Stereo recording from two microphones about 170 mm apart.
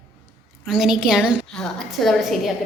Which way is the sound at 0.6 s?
Centre (ahead or behind).